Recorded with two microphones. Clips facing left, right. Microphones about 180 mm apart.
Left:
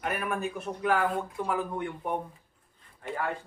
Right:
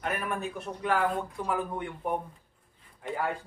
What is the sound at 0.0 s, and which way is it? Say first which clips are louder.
Speech: left 1 dB; centre (ahead or behind).